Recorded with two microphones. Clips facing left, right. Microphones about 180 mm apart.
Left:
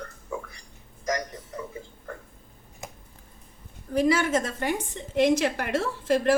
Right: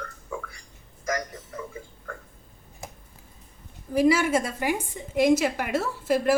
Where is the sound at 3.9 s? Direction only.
10° right (ahead or behind).